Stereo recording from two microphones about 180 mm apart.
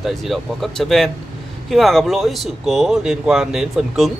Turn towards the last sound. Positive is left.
turn(degrees=0)  # may be behind; listen again after turning